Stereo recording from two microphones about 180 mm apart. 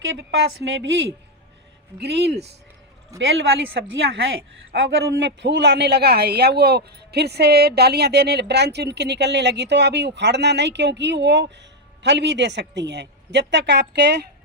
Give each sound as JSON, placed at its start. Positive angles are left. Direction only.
{"t": 0.0, "sound": "a man's voice", "side_deg": -85}
{"t": 3.8, "sound": "a man's voice", "side_deg": -75}